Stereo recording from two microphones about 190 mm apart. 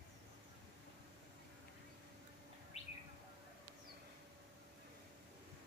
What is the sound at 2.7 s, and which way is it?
Bird, 35° left (ahead or behind).